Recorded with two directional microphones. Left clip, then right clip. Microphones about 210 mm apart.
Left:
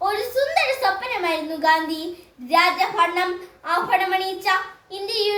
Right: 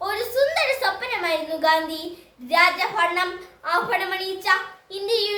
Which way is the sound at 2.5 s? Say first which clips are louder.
Left 1 dB; 15° right (ahead or behind).